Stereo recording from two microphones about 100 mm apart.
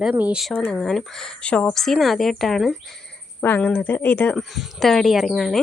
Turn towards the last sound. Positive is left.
turn(degrees=0)  # may be behind; listen again after turning